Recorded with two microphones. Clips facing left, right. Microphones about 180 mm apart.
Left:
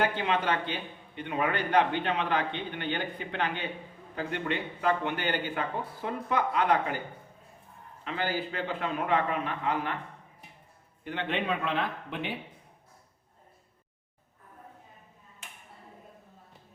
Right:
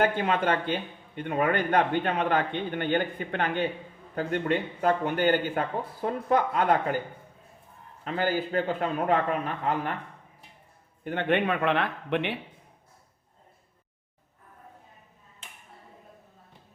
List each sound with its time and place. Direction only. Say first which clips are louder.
0.0 s a man's voice: right 3 dB; 50° right (ahead or behind)
8.0 s a man's voice: right 4 dB; 45° right (ahead or behind)
11.0 s a man's voice: right 6 dB; 50° right (ahead or behind); by 12.4 s 70° right (ahead or behind)